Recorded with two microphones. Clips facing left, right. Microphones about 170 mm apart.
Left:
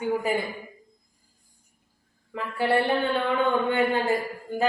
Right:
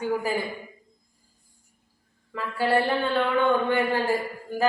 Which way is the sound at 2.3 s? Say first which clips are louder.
Even; 20° left (ahead or behind).